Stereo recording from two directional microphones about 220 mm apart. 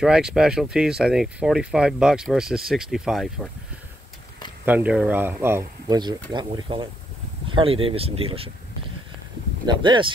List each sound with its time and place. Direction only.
0.0 s speech: 5° right (ahead or behind)
4.6 s speech: 5° right (ahead or behind); by 8.5 s 25° right (ahead or behind)
9.7 s speech: 20° right (ahead or behind)